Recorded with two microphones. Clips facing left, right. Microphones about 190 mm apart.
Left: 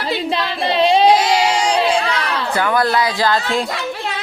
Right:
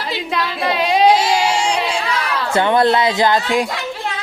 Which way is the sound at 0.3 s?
30° left (ahead or behind).